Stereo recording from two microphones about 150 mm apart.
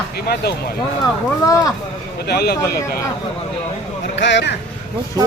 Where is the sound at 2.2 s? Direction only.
90° left.